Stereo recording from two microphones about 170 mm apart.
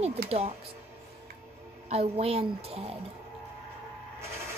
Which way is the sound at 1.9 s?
35° right (ahead or behind).